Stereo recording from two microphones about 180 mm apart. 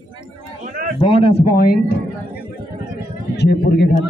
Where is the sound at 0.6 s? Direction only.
55° right (ahead or behind).